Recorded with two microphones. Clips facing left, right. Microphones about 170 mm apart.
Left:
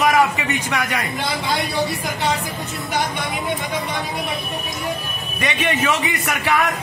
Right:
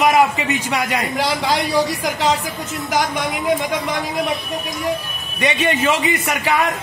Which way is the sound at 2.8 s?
90° right.